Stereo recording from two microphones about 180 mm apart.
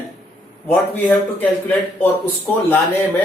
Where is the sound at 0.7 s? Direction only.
10° left (ahead or behind).